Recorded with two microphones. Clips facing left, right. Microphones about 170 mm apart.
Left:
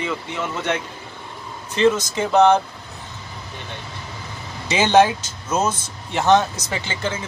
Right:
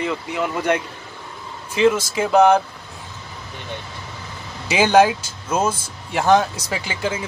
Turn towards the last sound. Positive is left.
turn(degrees=-10)  # may be behind; listen again after turning